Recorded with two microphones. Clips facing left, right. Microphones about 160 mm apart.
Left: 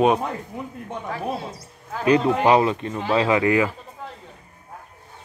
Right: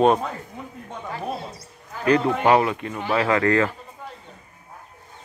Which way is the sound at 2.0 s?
15° left (ahead or behind).